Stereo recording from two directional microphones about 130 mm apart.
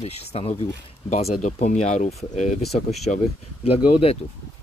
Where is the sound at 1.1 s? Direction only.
65° left (ahead or behind); by 4.2 s 50° left (ahead or behind).